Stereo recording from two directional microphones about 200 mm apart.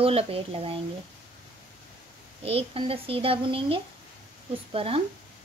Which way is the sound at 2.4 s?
30° right (ahead or behind).